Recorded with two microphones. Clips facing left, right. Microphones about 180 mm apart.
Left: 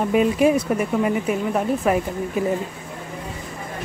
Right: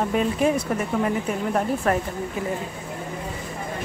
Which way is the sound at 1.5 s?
5° left (ahead or behind).